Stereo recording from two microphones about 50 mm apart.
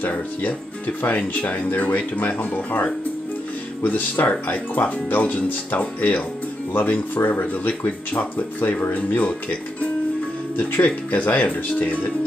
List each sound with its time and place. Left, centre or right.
0.0 s speech: left
11.1 s speech: left